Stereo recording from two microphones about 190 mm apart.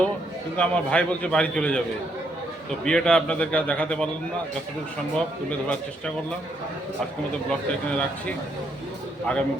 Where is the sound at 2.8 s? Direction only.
5° left (ahead or behind).